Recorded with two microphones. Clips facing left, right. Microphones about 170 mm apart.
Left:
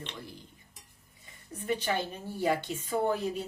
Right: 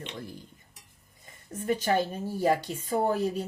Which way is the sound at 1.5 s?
45° right (ahead or behind).